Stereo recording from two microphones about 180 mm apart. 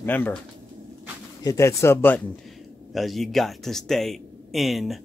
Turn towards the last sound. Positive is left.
turn(degrees=0)  # may be behind; listen again after turning